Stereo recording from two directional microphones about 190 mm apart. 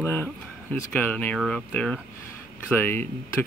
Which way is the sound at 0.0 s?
15° left (ahead or behind).